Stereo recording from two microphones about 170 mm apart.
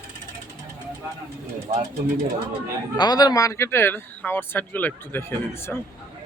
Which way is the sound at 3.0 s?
25° left (ahead or behind).